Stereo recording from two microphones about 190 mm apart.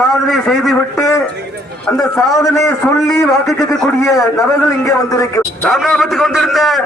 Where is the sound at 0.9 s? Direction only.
15° left (ahead or behind).